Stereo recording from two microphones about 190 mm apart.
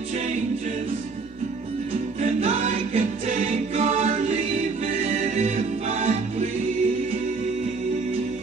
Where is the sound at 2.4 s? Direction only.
40° right (ahead or behind).